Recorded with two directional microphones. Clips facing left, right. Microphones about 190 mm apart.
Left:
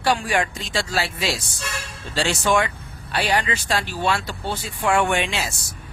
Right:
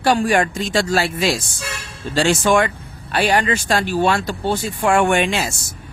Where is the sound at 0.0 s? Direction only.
45° right (ahead or behind).